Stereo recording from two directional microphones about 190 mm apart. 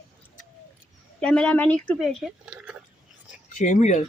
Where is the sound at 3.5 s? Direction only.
40° left (ahead or behind).